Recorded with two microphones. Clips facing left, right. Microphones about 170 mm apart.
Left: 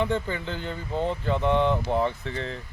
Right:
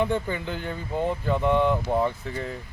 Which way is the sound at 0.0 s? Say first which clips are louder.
Right 1 dB; 15° right (ahead or behind).